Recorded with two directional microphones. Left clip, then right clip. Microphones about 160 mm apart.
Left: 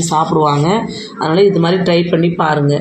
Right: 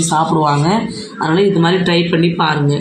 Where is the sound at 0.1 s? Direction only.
30° right (ahead or behind).